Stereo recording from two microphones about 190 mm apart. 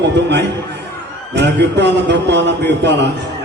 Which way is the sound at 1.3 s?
65° right (ahead or behind).